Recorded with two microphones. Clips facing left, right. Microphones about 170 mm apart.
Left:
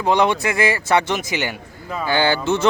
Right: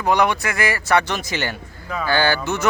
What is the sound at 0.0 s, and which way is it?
Speech, 25° left (ahead or behind).